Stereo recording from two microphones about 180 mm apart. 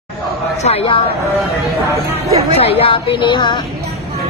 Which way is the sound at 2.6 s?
30° left (ahead or behind).